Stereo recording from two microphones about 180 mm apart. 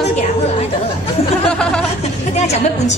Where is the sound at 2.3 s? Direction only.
40° left (ahead or behind).